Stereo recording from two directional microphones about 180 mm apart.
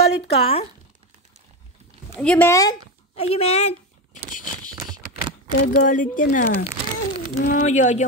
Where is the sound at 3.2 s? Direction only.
35° left (ahead or behind).